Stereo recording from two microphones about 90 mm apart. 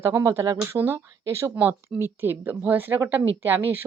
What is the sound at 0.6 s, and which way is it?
Speech, 25° right (ahead or behind).